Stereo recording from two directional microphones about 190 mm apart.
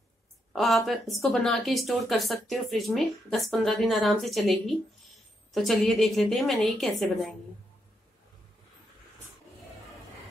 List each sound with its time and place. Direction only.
0.5 s speech: centre (ahead or behind)